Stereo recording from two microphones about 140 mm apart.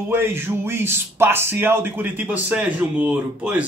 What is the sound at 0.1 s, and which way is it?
Speech, 15° right (ahead or behind).